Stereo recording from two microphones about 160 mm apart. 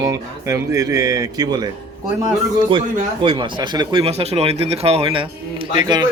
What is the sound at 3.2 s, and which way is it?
Speech, 30° right (ahead or behind).